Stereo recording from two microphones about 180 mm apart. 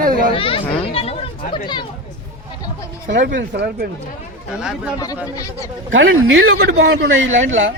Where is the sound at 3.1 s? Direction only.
75° right (ahead or behind).